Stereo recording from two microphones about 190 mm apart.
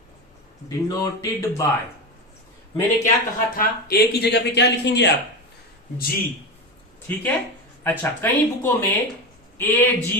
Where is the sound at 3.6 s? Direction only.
55° left (ahead or behind).